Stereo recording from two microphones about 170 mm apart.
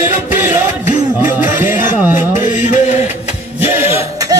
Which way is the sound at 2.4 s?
45° left (ahead or behind).